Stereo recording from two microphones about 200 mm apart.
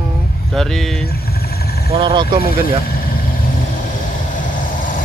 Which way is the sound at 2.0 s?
25° right (ahead or behind).